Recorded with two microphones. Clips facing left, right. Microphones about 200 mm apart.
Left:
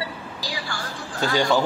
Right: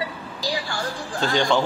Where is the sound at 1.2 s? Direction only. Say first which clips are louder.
Even; 5° left (ahead or behind).